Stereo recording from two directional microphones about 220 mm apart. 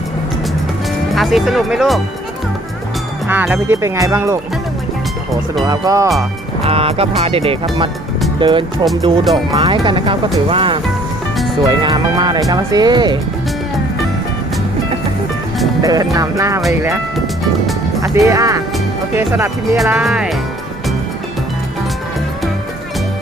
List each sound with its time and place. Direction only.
1.1 s speech: centre (ahead or behind)
3.2 s speech: 10° right (ahead or behind)
5.6 s speech: 15° right (ahead or behind)
6.6 s speech: 25° right (ahead or behind)
15.8 s music: 15° right (ahead or behind)
16.1 s speech: 15° right (ahead or behind)
18.0 s speech: 15° right (ahead or behind)